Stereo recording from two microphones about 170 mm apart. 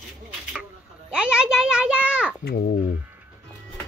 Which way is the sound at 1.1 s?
5° right (ahead or behind).